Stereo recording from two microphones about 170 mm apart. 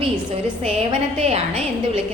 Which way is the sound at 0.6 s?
35° right (ahead or behind).